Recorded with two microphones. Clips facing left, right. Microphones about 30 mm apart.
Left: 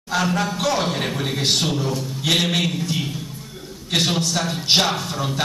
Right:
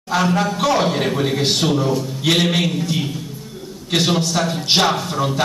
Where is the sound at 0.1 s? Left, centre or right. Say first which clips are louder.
Right 4 dB; centre.